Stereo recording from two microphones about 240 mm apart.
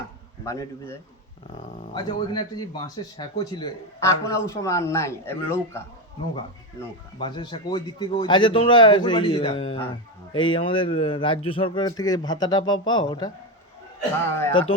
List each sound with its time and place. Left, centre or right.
0.4 s a man's voice: centre
14.3 s a man's voice: centre